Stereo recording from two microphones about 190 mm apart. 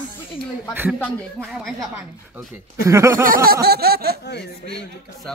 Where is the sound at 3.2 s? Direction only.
50° right (ahead or behind).